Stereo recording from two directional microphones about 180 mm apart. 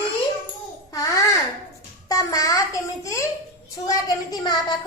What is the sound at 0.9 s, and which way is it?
A woman's voice, 20° left (ahead or behind).